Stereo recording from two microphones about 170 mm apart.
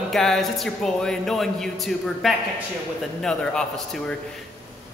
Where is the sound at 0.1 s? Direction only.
Centre (ahead or behind).